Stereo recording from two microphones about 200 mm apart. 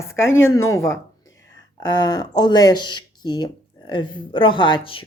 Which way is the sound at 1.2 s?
70° left (ahead or behind).